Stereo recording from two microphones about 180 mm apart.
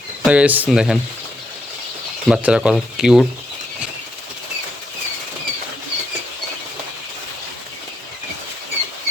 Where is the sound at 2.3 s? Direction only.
5° right (ahead or behind).